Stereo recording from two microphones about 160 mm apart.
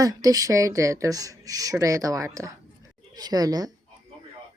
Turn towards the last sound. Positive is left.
turn(degrees=-25)  # may be behind; listen again after turning